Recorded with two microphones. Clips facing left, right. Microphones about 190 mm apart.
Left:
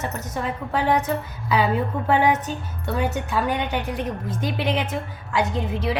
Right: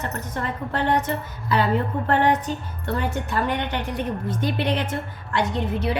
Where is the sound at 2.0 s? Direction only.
10° left (ahead or behind).